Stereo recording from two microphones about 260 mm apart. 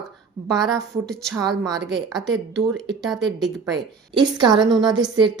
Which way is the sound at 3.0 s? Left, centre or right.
Centre.